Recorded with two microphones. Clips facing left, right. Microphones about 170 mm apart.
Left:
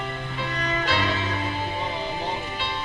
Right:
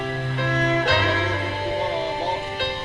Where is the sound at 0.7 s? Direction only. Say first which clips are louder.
Right 3 dB; 70° right (ahead or behind).